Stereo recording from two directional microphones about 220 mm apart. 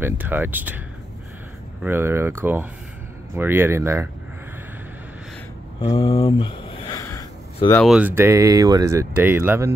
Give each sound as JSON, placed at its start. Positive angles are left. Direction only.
{"t": 0.0, "sound": "speech", "side_deg": -10}
{"t": 1.8, "sound": "speech", "side_deg": -10}
{"t": 5.8, "sound": "speech", "side_deg": 20}
{"t": 7.0, "sound": "a sound", "side_deg": 15}
{"t": 7.8, "sound": "speech", "side_deg": -5}